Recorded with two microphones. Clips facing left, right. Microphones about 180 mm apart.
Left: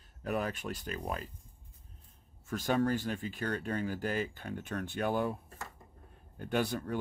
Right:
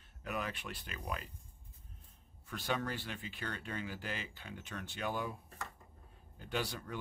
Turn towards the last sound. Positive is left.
turn(degrees=50)  # may be behind; listen again after turning